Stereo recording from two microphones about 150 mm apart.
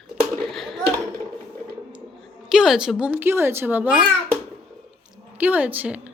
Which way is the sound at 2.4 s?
5° right (ahead or behind).